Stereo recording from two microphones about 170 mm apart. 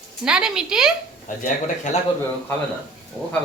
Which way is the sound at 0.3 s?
5° right (ahead or behind).